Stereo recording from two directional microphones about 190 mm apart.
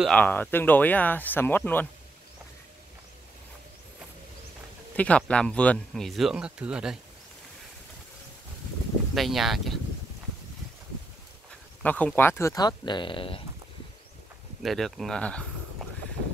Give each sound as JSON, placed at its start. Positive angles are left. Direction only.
{"t": 0.0, "sound": "speech", "side_deg": 5}
{"t": 4.9, "sound": "speech", "side_deg": 5}
{"t": 9.1, "sound": "speech", "side_deg": 0}
{"t": 11.8, "sound": "speech", "side_deg": 10}
{"t": 14.6, "sound": "speech", "side_deg": 0}